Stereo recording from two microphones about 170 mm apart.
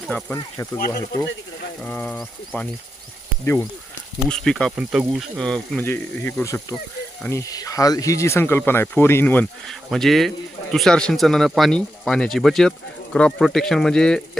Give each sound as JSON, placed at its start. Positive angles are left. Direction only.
{"t": 0.1, "sound": "speech", "side_deg": 5}
{"t": 0.3, "sound": "speech", "side_deg": 20}
{"t": 1.8, "sound": "speech", "side_deg": 10}
{"t": 4.3, "sound": "speech", "side_deg": 5}